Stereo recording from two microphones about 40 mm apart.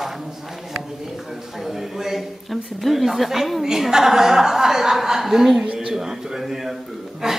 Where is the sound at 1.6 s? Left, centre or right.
Centre.